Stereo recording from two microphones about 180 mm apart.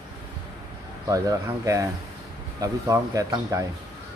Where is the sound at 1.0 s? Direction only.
20° right (ahead or behind).